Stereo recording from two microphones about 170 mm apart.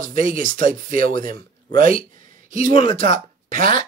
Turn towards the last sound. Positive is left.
turn(degrees=-55)  # may be behind; listen again after turning